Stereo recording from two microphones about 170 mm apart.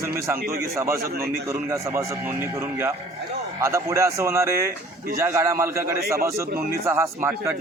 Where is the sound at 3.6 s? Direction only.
15° right (ahead or behind).